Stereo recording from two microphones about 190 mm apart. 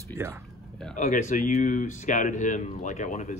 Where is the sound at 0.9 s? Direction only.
40° left (ahead or behind).